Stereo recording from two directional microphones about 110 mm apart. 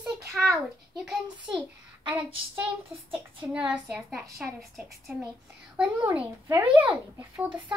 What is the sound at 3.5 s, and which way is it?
A child's voice, 10° right (ahead or behind).